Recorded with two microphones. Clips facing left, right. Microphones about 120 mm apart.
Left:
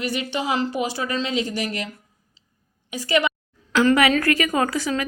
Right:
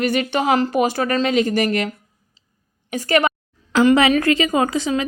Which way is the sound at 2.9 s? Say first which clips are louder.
Right 4 dB; 50° right (ahead or behind).